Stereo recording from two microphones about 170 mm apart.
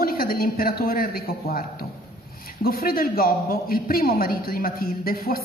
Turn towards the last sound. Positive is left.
turn(degrees=60)  # may be behind; listen again after turning